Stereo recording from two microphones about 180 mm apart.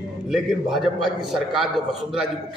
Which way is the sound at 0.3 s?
Centre (ahead or behind).